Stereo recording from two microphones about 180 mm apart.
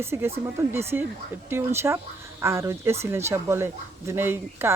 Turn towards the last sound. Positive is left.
turn(degrees=-15)  # may be behind; listen again after turning